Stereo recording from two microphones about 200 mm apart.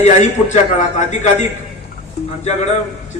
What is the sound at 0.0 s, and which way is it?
A man's voice, 35° left (ahead or behind).